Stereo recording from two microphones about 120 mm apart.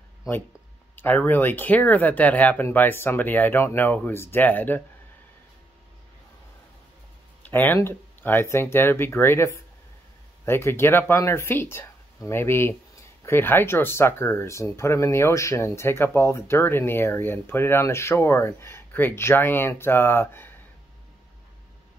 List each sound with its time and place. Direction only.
0.9 s speech: 15° left (ahead or behind)
7.4 s speech: 15° left (ahead or behind)